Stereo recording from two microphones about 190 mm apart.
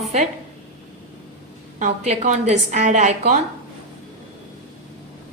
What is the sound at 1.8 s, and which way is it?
A woman's voice, 40° right (ahead or behind).